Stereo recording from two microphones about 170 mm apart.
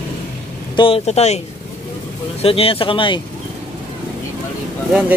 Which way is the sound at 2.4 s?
35° left (ahead or behind).